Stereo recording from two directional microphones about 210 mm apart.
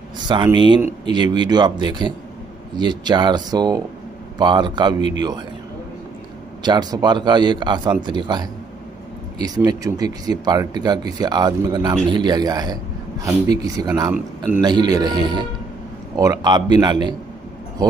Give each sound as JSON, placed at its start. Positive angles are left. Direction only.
{"t": 0.3, "sound": "speech", "side_deg": -20}
{"t": 6.6, "sound": "speech", "side_deg": -20}
{"t": 9.7, "sound": "speech", "side_deg": -20}
{"t": 14.1, "sound": "a man's voice", "side_deg": -5}
{"t": 14.6, "sound": "speech", "side_deg": -20}